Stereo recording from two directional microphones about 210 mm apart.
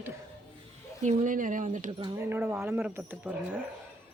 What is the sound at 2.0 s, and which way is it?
Speech, 15° right (ahead or behind).